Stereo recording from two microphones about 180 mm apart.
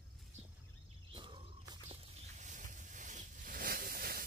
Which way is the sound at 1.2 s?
30° right (ahead or behind).